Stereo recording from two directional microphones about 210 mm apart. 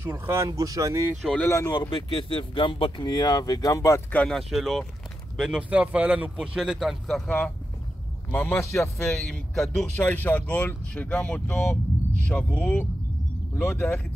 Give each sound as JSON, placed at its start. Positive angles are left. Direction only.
{"t": 0.0, "sound": "speech", "side_deg": -15}
{"t": 1.2, "sound": "speech", "side_deg": 5}
{"t": 8.9, "sound": "speech", "side_deg": 0}